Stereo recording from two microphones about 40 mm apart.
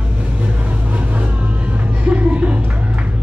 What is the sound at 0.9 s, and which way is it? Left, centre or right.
Vehicle, right.